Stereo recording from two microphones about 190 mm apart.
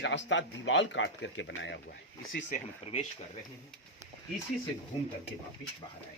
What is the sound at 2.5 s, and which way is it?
Speech, 35° left (ahead or behind).